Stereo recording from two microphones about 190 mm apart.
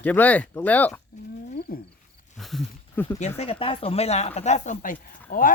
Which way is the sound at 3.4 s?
30° left (ahead or behind).